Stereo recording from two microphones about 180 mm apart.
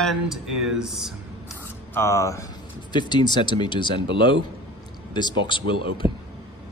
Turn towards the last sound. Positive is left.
turn(degrees=30)  # may be behind; listen again after turning